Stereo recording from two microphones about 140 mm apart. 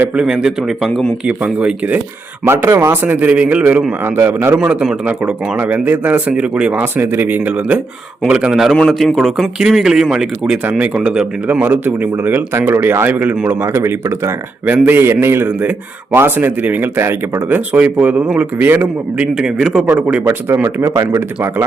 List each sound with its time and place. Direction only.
0.0 s a man's voice: 5° right (ahead or behind)
2.4 s a man's voice: 20° right (ahead or behind)